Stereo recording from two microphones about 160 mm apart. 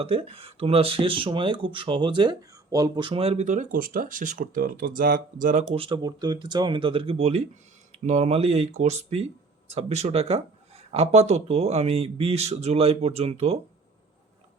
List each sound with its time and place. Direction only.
0.0 s speech: 35° right (ahead or behind); by 5.6 s 55° right (ahead or behind)
5.7 s speech: 35° right (ahead or behind)